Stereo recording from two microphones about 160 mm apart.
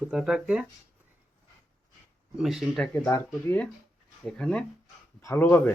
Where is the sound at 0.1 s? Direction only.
5° right (ahead or behind).